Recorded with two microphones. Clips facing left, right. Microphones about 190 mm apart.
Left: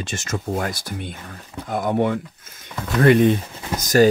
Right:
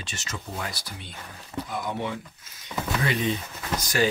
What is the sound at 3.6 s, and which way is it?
Speech, 20° left (ahead or behind).